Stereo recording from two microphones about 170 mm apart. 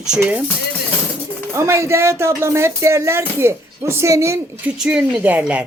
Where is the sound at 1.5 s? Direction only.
15° right (ahead or behind).